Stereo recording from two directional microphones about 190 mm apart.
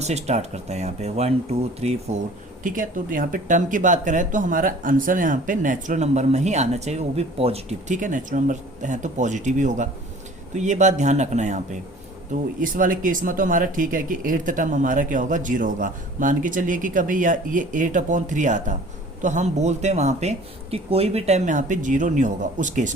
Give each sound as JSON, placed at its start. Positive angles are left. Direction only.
{"t": 0.0, "sound": "speech", "side_deg": -35}
{"t": 2.6, "sound": "speech", "side_deg": -45}